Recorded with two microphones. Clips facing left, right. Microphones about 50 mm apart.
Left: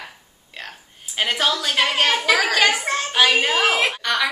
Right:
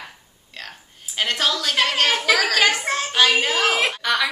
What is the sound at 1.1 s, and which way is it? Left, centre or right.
A woman's voice, centre.